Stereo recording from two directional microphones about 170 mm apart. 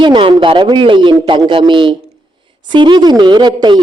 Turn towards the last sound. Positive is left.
turn(degrees=-25)  # may be behind; listen again after turning